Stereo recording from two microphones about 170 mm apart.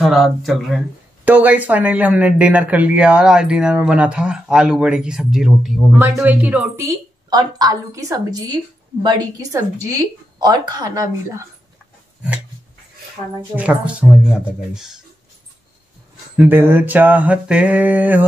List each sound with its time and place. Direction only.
0.0 s speech: centre (ahead or behind)
1.2 s speech: 10° right (ahead or behind)
7.2 s a woman's voice: 25° right (ahead or behind)
13.6 s speech: 10° right (ahead or behind)
16.3 s speech: 10° right (ahead or behind)